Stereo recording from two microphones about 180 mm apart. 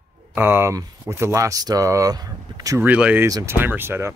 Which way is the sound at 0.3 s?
10° right (ahead or behind).